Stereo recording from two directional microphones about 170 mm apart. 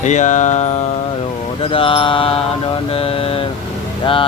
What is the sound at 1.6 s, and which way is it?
Speech, 30° left (ahead or behind).